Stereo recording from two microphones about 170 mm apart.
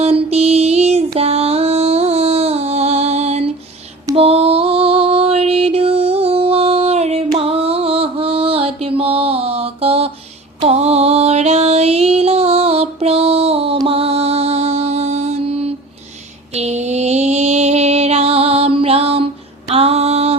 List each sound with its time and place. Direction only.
0.0 s music: 35° right (ahead or behind)
4.1 s mantra: 35° right (ahead or behind)
10.6 s music: 40° right (ahead or behind)
13.7 s mantra: 35° right (ahead or behind)